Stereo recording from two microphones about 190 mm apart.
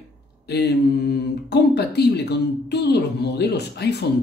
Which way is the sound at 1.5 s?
60° left (ahead or behind).